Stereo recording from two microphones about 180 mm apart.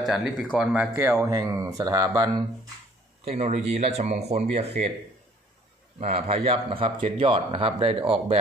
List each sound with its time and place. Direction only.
0.1 s speech: centre (ahead or behind); by 2.4 s 20° right (ahead or behind)
3.3 s speech: 35° right (ahead or behind)
5.9 s speech: 35° right (ahead or behind)